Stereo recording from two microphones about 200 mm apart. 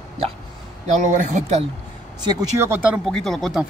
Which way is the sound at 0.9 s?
40° right (ahead or behind).